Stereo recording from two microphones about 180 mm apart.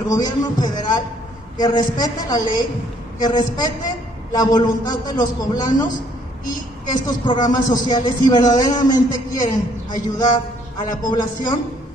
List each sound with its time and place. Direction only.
0.1 s speech: 20° left (ahead or behind)
6.9 s speech: 25° left (ahead or behind)